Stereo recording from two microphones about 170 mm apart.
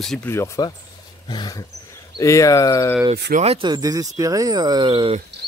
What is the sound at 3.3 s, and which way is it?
Speech, 35° right (ahead or behind).